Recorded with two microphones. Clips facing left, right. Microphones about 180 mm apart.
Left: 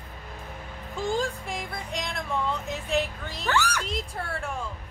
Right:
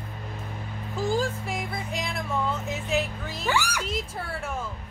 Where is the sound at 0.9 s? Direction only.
Centre (ahead or behind).